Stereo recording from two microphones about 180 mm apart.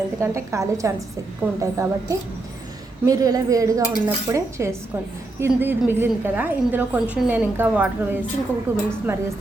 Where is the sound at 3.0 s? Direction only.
20° right (ahead or behind).